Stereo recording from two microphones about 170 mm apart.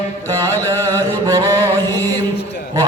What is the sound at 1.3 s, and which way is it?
Music, 20° right (ahead or behind).